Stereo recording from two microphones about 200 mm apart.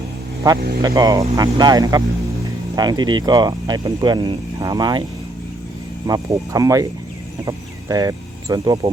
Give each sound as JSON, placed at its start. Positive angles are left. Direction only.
{"t": 0.4, "sound": "speech", "side_deg": -20}
{"t": 6.1, "sound": "speech", "side_deg": -15}